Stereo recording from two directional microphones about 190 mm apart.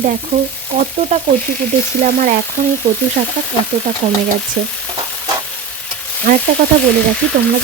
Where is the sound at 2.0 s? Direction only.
40° right (ahead or behind).